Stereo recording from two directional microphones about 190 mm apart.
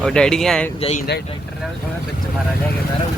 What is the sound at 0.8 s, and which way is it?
Speech, 30° left (ahead or behind).